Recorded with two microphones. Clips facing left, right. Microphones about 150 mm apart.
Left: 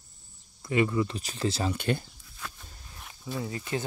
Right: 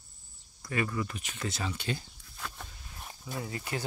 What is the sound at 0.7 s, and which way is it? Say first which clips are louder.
Speech: left 7 dB; 20° left (ahead or behind).